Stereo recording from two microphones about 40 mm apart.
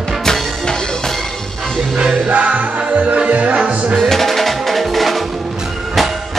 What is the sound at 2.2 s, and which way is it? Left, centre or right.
Music, right.